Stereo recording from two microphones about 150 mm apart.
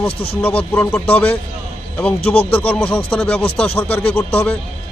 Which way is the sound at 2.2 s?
40° left (ahead or behind).